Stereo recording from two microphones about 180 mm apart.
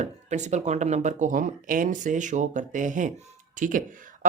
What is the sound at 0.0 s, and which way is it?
Speech, 40° right (ahead or behind).